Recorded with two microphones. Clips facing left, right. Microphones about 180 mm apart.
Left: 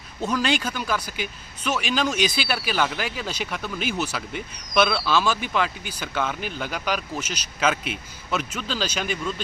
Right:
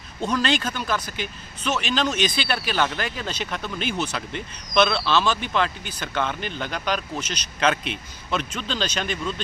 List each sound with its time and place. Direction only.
0.2 s speech: 10° left (ahead or behind)